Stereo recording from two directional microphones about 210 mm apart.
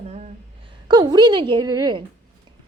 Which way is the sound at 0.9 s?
20° right (ahead or behind).